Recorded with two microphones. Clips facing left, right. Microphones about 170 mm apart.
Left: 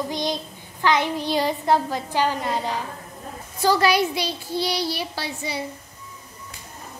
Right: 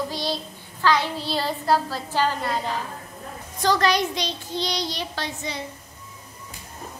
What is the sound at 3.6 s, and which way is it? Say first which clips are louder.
A woman's voice: left 2 dB; 5° left (ahead or behind).